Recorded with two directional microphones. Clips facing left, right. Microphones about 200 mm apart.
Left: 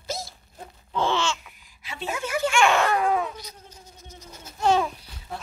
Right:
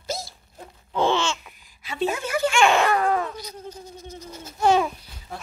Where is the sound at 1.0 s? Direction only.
20° right (ahead or behind).